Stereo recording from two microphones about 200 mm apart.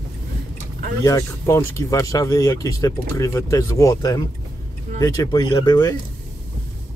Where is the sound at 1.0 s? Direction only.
15° left (ahead or behind).